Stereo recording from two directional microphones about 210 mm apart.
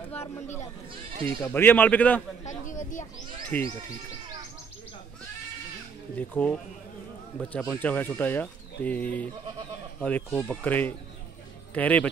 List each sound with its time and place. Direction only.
1.4 s speech: 10° left (ahead or behind)
2.4 s speech: 35° left (ahead or behind)
3.5 s speech: 5° left (ahead or behind)
6.1 s speech: 5° left (ahead or behind)